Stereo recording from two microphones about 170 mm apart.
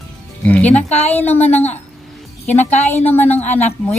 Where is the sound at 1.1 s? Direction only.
10° left (ahead or behind).